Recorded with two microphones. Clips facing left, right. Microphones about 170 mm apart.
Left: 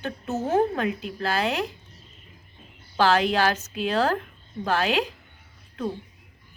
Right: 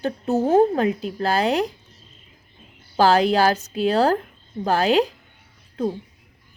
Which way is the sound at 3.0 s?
35° right (ahead or behind).